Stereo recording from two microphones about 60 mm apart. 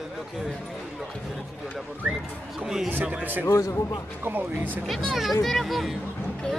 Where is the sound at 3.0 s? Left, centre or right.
Right.